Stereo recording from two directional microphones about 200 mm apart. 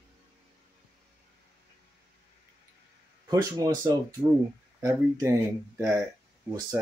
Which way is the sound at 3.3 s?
20° right (ahead or behind).